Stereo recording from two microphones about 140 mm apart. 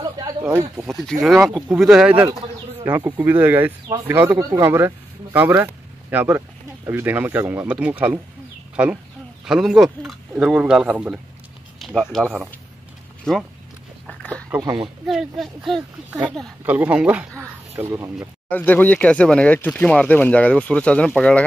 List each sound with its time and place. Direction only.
0.8 s speech: centre (ahead or behind)
2.8 s speech: 25° right (ahead or behind)
3.2 s speech: 15° right (ahead or behind); by 13.5 s 5° left (ahead or behind)
14.0 s a sound: 10° left (ahead or behind)
14.6 s speech: 30° right (ahead or behind)
15.0 s speech: centre (ahead or behind)
16.6 s speech: 10° right (ahead or behind)
18.5 s speech: 10° left (ahead or behind)